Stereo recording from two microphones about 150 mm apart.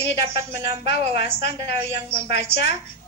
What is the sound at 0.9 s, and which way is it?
A woman's voice, 40° right (ahead or behind).